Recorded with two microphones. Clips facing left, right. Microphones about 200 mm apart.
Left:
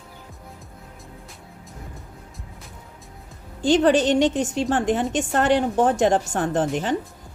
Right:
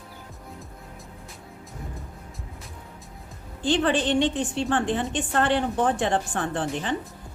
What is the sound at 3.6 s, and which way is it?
A woman's voice, 40° left (ahead or behind).